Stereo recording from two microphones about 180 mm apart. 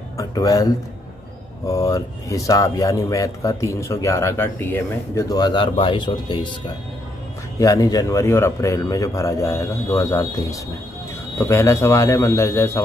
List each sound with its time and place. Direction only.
0.2 s speech: 20° left (ahead or behind)
7.5 s speech: 20° left (ahead or behind)